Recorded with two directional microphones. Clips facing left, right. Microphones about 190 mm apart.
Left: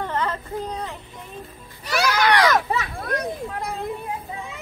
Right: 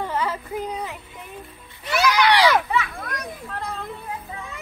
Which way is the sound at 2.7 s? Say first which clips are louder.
Left 1 dB; 35° left (ahead or behind).